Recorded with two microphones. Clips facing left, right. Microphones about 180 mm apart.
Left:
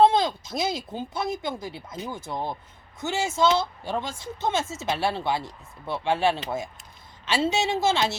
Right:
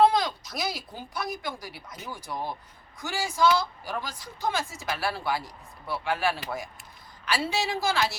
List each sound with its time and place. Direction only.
0.0 s a woman's voice: 25° left (ahead or behind)